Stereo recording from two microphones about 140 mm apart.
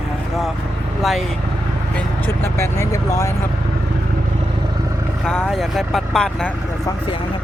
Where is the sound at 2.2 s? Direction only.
20° left (ahead or behind).